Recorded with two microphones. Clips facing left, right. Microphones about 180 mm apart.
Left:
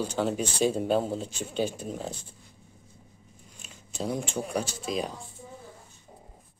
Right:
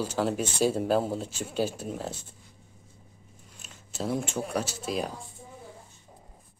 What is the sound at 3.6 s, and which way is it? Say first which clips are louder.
Speech: even; centre (ahead or behind).